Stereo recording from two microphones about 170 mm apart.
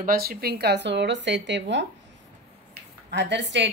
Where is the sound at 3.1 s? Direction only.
90° right.